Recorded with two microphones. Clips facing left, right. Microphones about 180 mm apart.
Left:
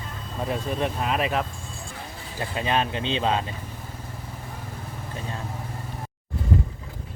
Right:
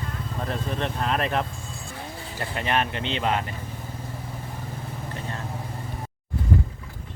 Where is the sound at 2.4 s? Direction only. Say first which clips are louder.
Left 1 dB; 15° left (ahead or behind).